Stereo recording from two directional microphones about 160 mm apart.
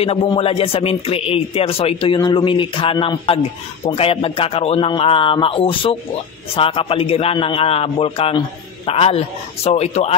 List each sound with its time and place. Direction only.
0.0 s a man's voice: 35° left (ahead or behind)